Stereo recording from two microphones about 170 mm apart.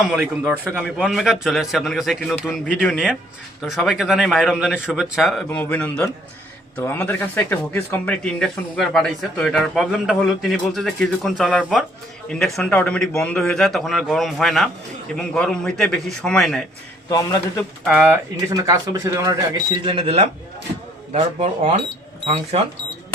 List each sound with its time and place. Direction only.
0.1 s a man's voice: 5° right (ahead or behind)
17.8 s a man's voice: 5° right (ahead or behind)
18.3 s a man's voice: 20° right (ahead or behind); by 21.8 s 40° right (ahead or behind)